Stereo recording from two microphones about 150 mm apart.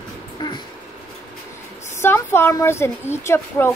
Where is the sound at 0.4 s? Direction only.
30° left (ahead or behind).